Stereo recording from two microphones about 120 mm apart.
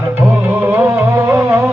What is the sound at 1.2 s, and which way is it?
Music, 25° right (ahead or behind).